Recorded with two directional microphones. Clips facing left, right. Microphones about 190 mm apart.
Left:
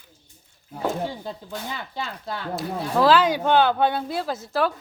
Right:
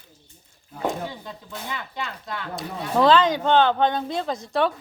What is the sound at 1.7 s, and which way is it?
Speech, 30° left (ahead or behind).